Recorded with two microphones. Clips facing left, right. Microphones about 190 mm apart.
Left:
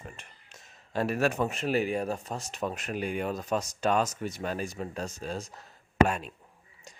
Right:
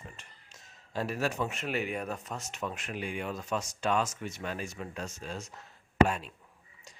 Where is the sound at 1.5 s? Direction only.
35° left (ahead or behind).